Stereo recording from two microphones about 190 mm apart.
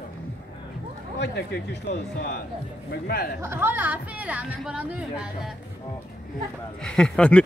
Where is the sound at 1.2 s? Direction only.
60° left (ahead or behind).